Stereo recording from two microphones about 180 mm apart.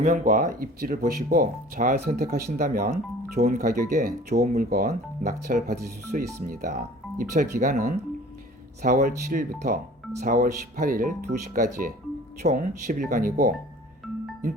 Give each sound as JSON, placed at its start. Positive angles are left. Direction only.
{"t": 0.0, "sound": "speech", "side_deg": -45}
{"t": 2.5, "sound": "speech", "side_deg": -45}